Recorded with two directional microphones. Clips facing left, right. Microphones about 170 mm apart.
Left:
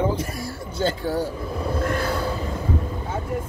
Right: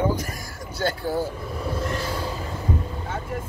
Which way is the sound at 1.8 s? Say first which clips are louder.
Left 4 dB; 55° left (ahead or behind).